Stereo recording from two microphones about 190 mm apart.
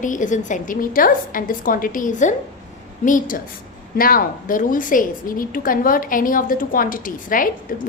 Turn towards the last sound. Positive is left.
turn(degrees=45)  # may be behind; listen again after turning